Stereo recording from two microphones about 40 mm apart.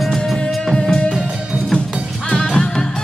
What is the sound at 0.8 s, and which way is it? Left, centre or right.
Music, left.